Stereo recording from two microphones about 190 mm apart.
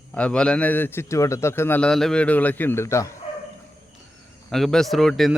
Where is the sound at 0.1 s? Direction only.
5° left (ahead or behind).